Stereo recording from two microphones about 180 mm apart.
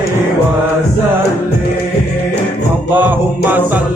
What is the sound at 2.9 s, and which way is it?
Music, 10° right (ahead or behind).